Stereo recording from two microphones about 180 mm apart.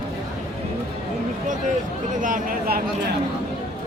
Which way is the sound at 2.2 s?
50° right (ahead or behind).